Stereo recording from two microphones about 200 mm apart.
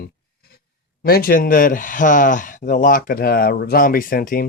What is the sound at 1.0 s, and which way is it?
Speech, 50° left (ahead or behind).